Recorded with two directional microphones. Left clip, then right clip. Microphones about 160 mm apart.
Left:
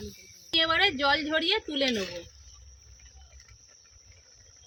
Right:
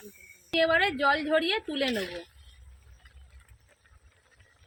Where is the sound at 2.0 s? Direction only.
25° left (ahead or behind).